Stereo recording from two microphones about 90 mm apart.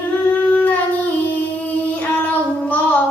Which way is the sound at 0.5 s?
20° left (ahead or behind).